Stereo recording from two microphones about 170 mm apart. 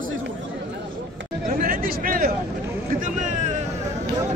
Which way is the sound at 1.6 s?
55° right (ahead or behind).